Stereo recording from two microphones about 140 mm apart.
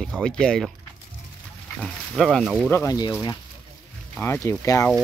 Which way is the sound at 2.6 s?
15° left (ahead or behind).